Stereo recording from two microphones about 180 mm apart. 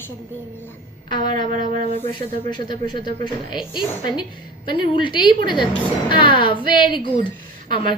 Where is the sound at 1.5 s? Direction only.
45° right (ahead or behind).